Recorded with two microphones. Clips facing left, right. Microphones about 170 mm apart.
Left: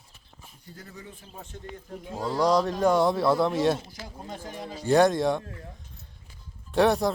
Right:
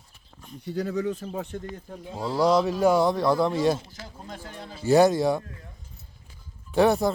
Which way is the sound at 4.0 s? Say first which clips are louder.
Left 1 dB; 15° left (ahead or behind).